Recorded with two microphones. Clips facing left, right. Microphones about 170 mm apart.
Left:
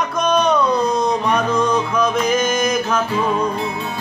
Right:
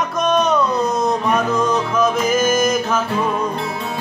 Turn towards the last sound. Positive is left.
turn(degrees=0)  # may be behind; listen again after turning